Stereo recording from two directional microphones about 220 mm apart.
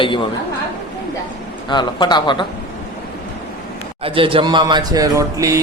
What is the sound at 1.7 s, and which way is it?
Speech, 20° left (ahead or behind).